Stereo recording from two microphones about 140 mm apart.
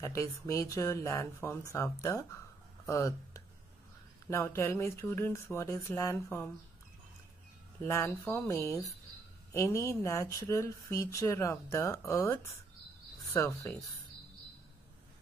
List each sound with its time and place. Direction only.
0.0 s speech: 20° left (ahead or behind)
7.8 s speech: 15° left (ahead or behind)